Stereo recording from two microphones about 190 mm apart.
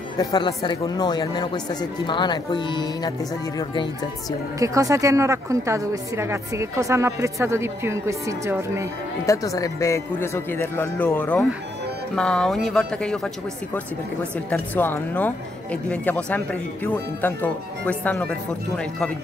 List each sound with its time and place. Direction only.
0.2 s speech: 20° left (ahead or behind)
4.6 s a woman's voice: 15° right (ahead or behind)
9.2 s speech: 15° left (ahead or behind)
14.5 s speech: 10° left (ahead or behind)